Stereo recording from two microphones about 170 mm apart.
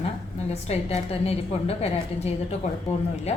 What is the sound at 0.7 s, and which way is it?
A woman's voice, 35° left (ahead or behind).